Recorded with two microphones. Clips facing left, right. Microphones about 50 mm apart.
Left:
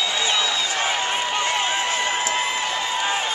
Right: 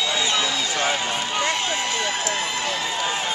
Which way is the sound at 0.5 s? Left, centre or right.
Centre.